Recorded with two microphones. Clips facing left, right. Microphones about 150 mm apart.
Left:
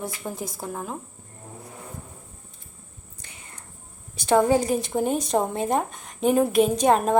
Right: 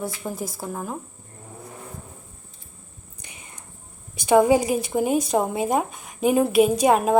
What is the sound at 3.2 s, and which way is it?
Whispering, 15° right (ahead or behind).